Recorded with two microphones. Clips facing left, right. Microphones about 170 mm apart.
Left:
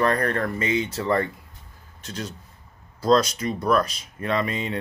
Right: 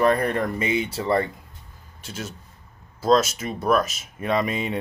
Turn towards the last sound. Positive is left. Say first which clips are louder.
# right 2 dB
turn(degrees=-10)  # may be behind; listen again after turning